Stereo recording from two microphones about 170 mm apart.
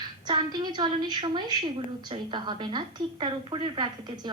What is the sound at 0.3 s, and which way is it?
A woman's voice, 25° right (ahead or behind).